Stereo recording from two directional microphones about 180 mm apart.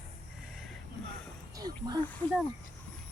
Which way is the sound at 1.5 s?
20° right (ahead or behind).